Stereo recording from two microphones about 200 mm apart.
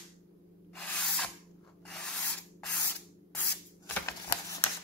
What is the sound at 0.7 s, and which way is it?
Spray, 5° left (ahead or behind).